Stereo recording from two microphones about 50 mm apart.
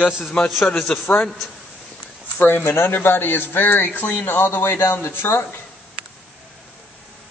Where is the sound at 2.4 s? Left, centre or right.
Left.